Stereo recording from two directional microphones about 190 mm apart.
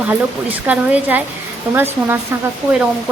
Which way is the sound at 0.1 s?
10° right (ahead or behind).